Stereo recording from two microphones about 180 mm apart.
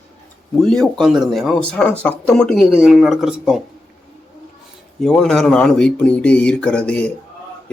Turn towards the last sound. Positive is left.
turn(degrees=5)  # may be behind; listen again after turning